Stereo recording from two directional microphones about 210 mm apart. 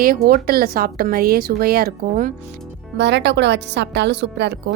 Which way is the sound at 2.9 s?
55° right (ahead or behind).